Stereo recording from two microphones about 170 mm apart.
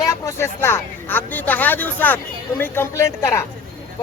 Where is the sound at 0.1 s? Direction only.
15° left (ahead or behind).